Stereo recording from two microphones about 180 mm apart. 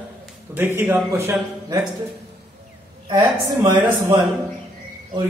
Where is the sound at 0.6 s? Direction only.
10° right (ahead or behind).